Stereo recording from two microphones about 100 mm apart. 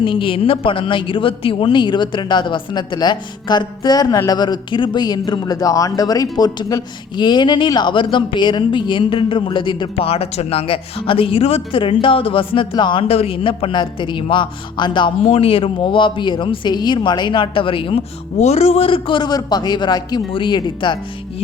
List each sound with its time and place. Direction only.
0.0 s speech: 60° left (ahead or behind)
9.9 s speech: 75° left (ahead or behind); by 13.1 s 50° left (ahead or behind)
13.1 s speech: 75° left (ahead or behind); by 15.1 s 50° left (ahead or behind)
15.3 s speech: 70° left (ahead or behind)
18.4 s speech: 90° left; by 21.0 s 50° left (ahead or behind)